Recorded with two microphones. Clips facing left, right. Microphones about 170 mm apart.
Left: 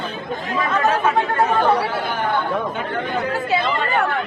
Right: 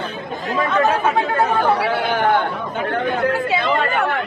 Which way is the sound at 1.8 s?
75° right (ahead or behind).